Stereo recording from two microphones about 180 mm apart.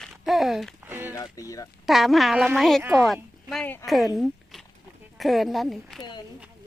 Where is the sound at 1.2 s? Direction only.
20° left (ahead or behind).